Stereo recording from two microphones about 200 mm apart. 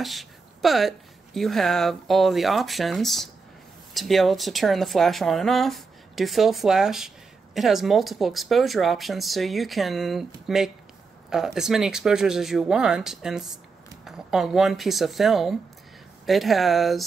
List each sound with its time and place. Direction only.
0.0 s speech: centre (ahead or behind)